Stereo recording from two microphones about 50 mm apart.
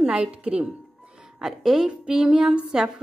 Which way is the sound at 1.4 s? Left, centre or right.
Centre.